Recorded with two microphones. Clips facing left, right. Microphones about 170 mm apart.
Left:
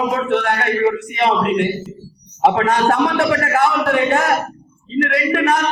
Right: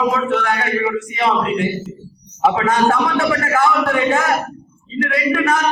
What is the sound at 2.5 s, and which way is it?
Speech, 65° left (ahead or behind).